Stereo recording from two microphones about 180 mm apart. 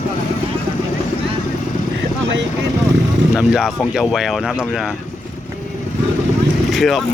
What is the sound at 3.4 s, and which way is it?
Speech, 5° right (ahead or behind).